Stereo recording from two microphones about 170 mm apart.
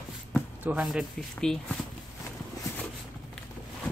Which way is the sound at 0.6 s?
5° right (ahead or behind).